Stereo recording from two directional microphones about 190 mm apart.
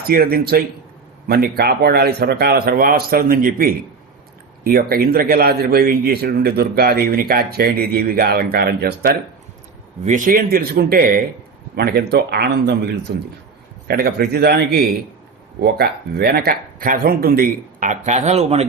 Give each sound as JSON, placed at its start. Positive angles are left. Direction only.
{"t": 0.1, "sound": "a man's voice", "side_deg": -50}